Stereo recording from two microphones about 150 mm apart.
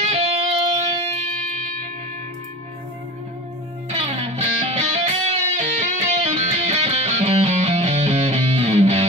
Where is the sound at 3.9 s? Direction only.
40° right (ahead or behind).